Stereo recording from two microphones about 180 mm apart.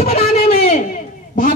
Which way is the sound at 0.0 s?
35° left (ahead or behind).